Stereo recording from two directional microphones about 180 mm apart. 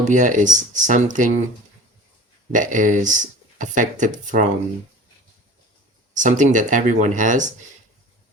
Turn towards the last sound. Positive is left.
turn(degrees=-45)  # may be behind; listen again after turning